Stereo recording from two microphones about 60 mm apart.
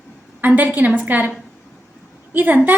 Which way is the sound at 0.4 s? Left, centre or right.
Right.